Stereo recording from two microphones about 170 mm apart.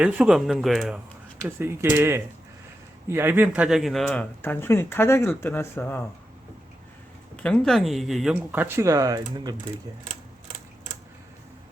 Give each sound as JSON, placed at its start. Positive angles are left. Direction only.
{"t": 0.0, "sound": "speech", "side_deg": -5}
{"t": 1.4, "sound": "speech", "side_deg": -15}
{"t": 7.3, "sound": "speech", "side_deg": 5}
{"t": 8.5, "sound": "speech", "side_deg": -15}